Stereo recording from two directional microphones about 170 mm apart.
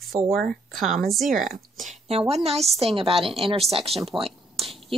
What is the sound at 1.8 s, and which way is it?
Speech, 35° right (ahead or behind).